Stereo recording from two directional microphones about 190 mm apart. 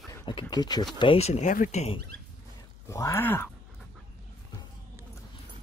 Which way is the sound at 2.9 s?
15° left (ahead or behind).